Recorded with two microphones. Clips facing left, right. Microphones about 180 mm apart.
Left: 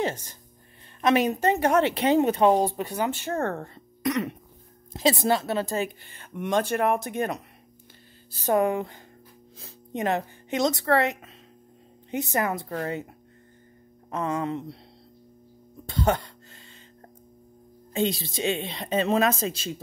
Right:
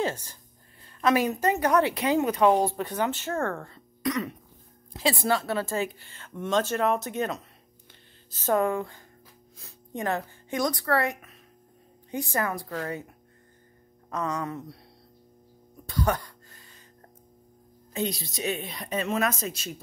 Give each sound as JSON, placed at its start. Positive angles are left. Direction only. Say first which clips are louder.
{"t": 0.0, "sound": "a woman's voice", "louder": "left 1 dB", "side_deg": 20}
{"t": 2.5, "sound": "a woman's voice", "louder": "left 1 dB", "side_deg": 15}
{"t": 8.3, "sound": "a woman's voice", "louder": "left 2 dB", "side_deg": 15}
{"t": 14.1, "sound": "a woman's voice", "louder": "left 3 dB", "side_deg": 25}
{"t": 15.9, "sound": "a sound", "louder": "left 3 dB", "side_deg": 25}
{"t": 17.9, "sound": "a woman's voice", "louder": "left 4 dB", "side_deg": 25}